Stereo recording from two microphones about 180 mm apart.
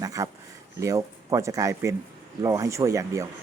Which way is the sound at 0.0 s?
20° right (ahead or behind).